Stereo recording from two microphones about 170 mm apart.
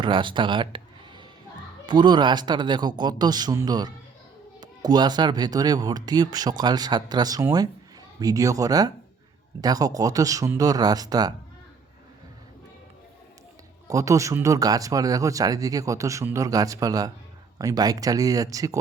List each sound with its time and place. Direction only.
0.0 s speech: 30° right (ahead or behind)
13.8 s speech: 20° right (ahead or behind)